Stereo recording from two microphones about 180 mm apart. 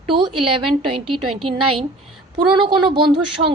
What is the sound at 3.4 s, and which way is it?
Speech, 55° right (ahead or behind).